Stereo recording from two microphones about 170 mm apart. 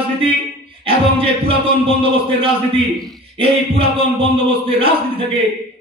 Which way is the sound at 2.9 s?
Centre (ahead or behind).